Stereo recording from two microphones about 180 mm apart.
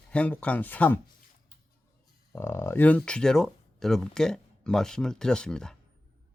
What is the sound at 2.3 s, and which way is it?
A man's voice, 10° left (ahead or behind).